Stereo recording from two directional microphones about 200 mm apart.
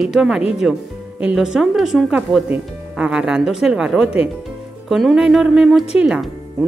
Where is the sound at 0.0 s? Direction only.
Centre (ahead or behind).